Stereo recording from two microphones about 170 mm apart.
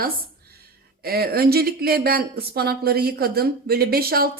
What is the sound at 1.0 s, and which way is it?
Speech, 65° right (ahead or behind).